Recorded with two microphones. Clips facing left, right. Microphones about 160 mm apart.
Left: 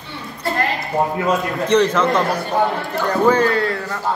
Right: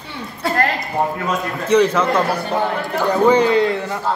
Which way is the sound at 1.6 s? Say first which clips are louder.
Right 2 dB; 10° right (ahead or behind).